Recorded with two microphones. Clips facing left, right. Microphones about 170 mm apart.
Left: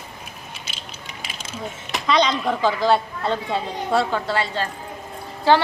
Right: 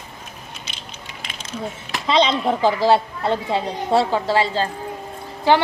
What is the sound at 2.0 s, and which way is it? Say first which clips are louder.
A child's voice: right 2 dB; 25° right (ahead or behind).